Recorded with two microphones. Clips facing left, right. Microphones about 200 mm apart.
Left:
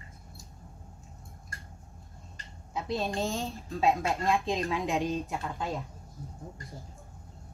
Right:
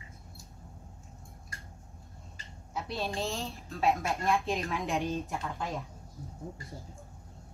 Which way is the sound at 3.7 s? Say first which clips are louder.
Left 2 dB; 15° left (ahead or behind).